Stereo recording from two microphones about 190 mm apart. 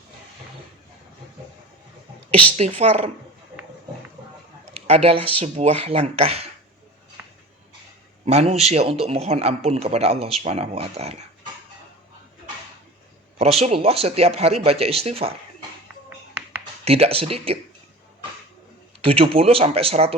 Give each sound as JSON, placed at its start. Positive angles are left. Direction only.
{"t": 2.6, "sound": "a man's voice", "side_deg": -35}
{"t": 4.9, "sound": "a man's voice", "side_deg": -30}
{"t": 8.3, "sound": "a man's voice", "side_deg": -35}
{"t": 13.4, "sound": "a man's voice", "side_deg": -35}
{"t": 16.8, "sound": "a man's voice", "side_deg": -30}
{"t": 19.0, "sound": "a man's voice", "side_deg": -30}